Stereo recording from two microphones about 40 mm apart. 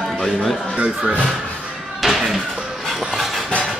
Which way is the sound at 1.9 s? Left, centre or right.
Centre.